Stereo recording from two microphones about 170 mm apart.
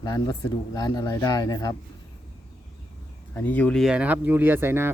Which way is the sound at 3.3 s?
10° left (ahead or behind).